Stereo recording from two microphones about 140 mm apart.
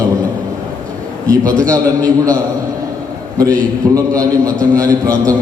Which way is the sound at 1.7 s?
25° right (ahead or behind).